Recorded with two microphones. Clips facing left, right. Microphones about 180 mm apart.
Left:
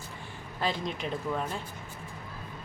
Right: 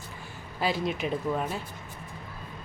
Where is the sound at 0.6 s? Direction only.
10° right (ahead or behind).